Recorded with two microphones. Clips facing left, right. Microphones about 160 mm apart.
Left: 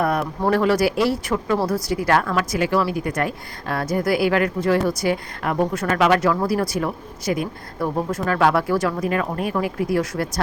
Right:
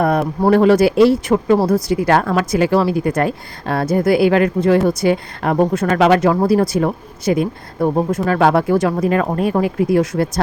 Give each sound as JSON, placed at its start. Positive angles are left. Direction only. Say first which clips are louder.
{"t": 0.0, "sound": "a woman's voice", "louder": "right 5 dB", "side_deg": -25}
{"t": 8.9, "sound": "a woman's voice", "louder": "right 6 dB", "side_deg": -30}